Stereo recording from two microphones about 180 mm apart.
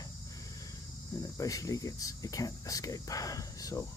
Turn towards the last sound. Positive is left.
turn(degrees=20)  # may be behind; listen again after turning